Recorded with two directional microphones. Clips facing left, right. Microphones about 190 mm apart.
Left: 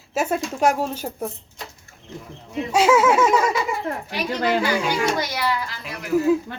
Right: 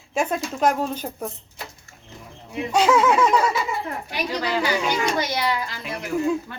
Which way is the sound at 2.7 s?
5° left (ahead or behind).